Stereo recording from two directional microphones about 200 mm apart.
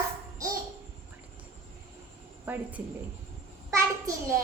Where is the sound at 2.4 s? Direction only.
10° right (ahead or behind).